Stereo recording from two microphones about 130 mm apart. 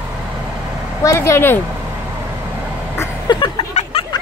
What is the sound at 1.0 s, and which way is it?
Speech, 20° left (ahead or behind).